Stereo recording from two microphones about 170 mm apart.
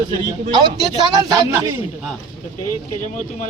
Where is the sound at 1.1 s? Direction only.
20° right (ahead or behind).